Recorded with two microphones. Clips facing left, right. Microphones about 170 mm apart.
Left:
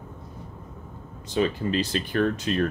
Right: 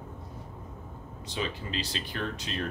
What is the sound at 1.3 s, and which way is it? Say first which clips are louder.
Speech: left 10 dB; 50° left (ahead or behind).